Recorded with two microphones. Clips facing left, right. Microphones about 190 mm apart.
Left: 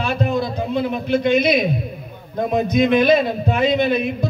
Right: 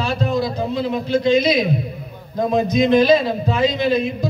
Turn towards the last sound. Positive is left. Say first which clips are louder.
# even
turn(degrees=60)  # may be behind; listen again after turning